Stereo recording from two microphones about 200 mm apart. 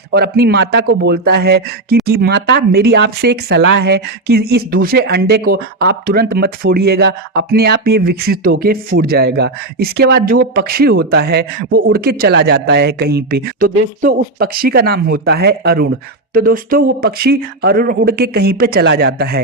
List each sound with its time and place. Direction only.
0.1 s speech: 50° right (ahead or behind)